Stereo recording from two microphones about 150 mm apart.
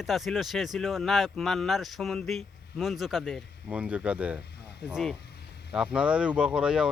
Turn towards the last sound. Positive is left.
turn(degrees=-5)  # may be behind; listen again after turning